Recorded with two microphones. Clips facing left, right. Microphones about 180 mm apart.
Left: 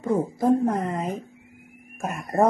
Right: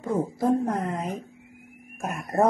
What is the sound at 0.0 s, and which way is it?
Speech, centre (ahead or behind).